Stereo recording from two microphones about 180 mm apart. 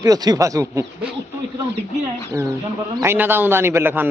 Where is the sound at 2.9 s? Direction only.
15° right (ahead or behind).